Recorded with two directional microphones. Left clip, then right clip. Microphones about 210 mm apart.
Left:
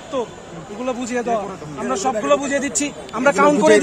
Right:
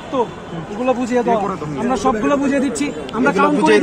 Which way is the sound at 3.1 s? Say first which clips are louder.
Left 1 dB; 45° left (ahead or behind).